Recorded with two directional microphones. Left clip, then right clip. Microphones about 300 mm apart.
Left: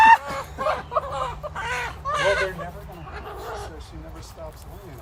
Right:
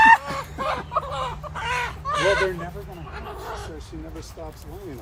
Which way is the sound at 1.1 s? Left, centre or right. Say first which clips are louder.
Left 1 dB; centre.